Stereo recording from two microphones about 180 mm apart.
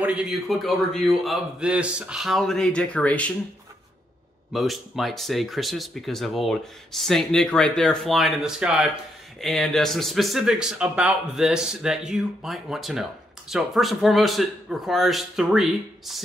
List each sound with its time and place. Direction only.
0.0 s speech: 5° right (ahead or behind)
4.5 s speech: centre (ahead or behind)